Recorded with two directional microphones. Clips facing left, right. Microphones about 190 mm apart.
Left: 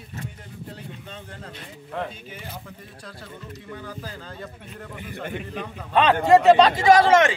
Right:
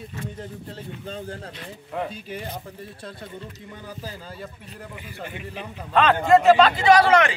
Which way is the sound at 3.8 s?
10° right (ahead or behind).